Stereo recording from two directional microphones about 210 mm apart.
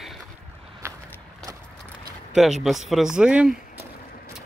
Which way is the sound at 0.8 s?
15° right (ahead or behind).